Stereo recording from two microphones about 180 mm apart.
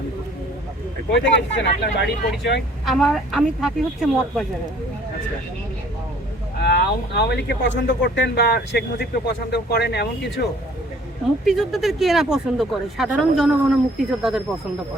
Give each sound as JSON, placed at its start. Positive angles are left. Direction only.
{"t": 1.1, "sound": "speech", "side_deg": 80}
{"t": 2.8, "sound": "speech", "side_deg": 0}
{"t": 6.6, "sound": "speech", "side_deg": 65}
{"t": 11.4, "sound": "speech", "side_deg": 0}